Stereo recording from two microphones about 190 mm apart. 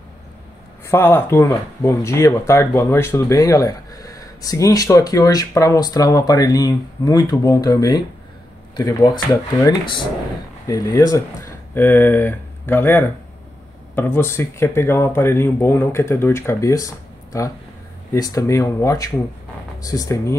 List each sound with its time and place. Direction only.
0.8 s speech: 15° left (ahead or behind)